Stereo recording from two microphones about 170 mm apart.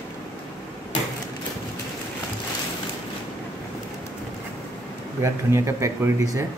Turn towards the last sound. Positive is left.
turn(degrees=-20)  # may be behind; listen again after turning